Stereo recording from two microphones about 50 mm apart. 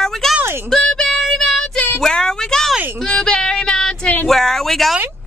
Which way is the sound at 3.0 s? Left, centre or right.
Centre.